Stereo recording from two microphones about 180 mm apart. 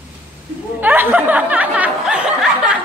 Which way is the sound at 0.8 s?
10° right (ahead or behind).